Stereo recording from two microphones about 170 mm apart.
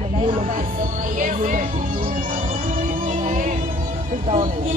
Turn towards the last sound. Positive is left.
turn(degrees=-50)  # may be behind; listen again after turning